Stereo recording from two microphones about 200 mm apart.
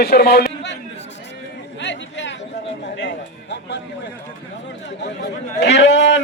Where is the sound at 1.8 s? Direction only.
65° left (ahead or behind).